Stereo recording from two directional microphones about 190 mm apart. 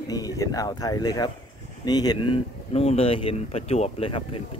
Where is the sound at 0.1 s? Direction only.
20° left (ahead or behind).